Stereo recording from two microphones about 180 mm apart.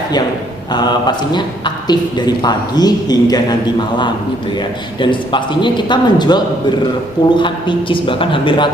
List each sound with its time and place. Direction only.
0.7 s a man's voice: 25° left (ahead or behind)
4.5 s a man's voice: 25° left (ahead or behind)